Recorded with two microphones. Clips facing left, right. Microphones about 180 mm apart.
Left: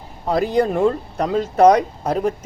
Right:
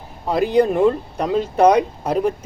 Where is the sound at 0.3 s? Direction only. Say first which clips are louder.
Right 2 dB; centre (ahead or behind).